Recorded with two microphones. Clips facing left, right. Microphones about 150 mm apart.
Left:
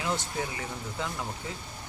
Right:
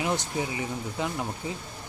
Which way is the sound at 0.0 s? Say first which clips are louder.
Right 3 dB; 15° right (ahead or behind).